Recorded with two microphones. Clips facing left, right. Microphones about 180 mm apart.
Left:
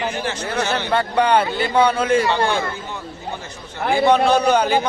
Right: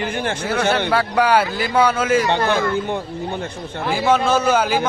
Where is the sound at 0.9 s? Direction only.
5° right (ahead or behind).